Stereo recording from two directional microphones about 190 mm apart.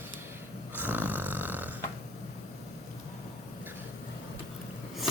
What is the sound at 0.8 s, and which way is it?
Snoring, 10° right (ahead or behind).